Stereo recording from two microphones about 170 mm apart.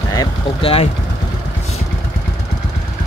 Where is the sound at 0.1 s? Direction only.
30° left (ahead or behind).